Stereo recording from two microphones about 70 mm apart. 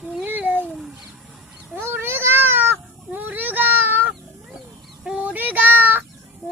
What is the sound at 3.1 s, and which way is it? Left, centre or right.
Child singing, right.